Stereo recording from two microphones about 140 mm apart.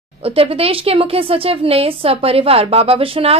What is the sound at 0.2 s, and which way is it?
Speech, 45° right (ahead or behind).